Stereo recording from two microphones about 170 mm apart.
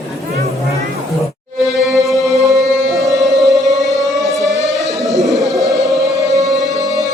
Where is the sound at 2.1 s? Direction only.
Centre (ahead or behind).